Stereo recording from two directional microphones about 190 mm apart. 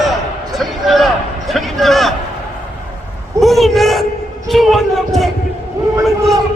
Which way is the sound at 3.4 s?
Centre (ahead or behind).